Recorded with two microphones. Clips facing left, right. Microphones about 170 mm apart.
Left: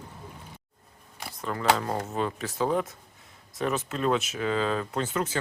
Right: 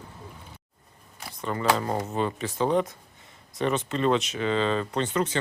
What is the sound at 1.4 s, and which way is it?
Speech, centre (ahead or behind).